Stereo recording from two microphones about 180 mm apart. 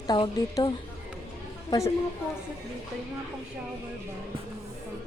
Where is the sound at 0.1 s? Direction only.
20° left (ahead or behind).